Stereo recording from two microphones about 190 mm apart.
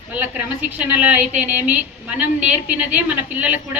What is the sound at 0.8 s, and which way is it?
A man's voice, 5° right (ahead or behind).